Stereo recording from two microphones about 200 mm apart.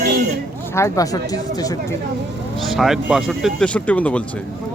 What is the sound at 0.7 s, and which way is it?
Speech, 15° left (ahead or behind).